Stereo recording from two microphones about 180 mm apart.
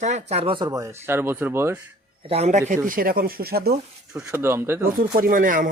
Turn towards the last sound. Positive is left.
turn(degrees=-50)  # may be behind; listen again after turning